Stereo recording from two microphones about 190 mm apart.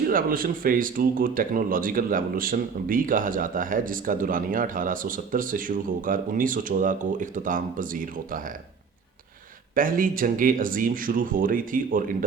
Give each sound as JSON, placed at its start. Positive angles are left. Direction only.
{"t": 0.1, "sound": "speech", "side_deg": -50}
{"t": 9.7, "sound": "speech", "side_deg": -45}